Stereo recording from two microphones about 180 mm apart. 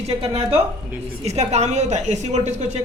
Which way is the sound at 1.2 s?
35° right (ahead or behind).